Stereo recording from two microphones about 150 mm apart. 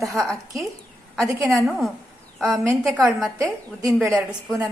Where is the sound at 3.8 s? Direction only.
20° right (ahead or behind).